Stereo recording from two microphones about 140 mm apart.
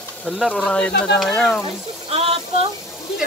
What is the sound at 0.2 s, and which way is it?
Speech, centre (ahead or behind).